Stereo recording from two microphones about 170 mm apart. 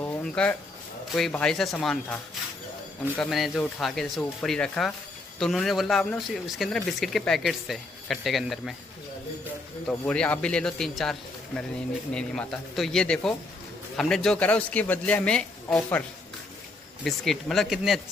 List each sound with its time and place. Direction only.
0.0 s a sound: 5° left (ahead or behind)
1.1 s speech: 5° left (ahead or behind)
3.2 s speech: centre (ahead or behind)
9.8 s speech: 5° left (ahead or behind)
17.0 s speech: centre (ahead or behind)